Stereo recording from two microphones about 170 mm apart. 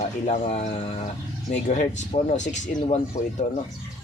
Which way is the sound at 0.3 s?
40° left (ahead or behind).